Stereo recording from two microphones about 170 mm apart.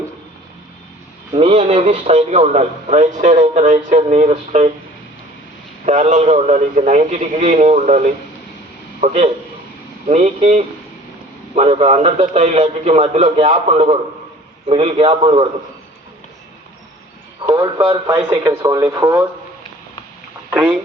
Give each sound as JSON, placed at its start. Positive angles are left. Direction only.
{"t": 1.3, "sound": "a man's voice", "side_deg": -35}
{"t": 5.8, "sound": "a man's voice", "side_deg": -40}
{"t": 17.4, "sound": "a man's voice", "side_deg": -20}
{"t": 20.5, "sound": "speech", "side_deg": -10}